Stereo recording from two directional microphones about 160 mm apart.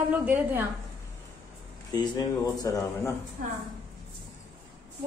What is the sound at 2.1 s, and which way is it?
Speech, 20° left (ahead or behind).